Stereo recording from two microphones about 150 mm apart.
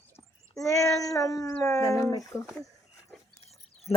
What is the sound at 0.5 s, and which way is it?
Speech, 20° left (ahead or behind).